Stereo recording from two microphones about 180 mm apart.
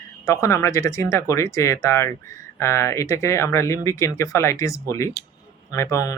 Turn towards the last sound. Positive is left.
turn(degrees=15)  # may be behind; listen again after turning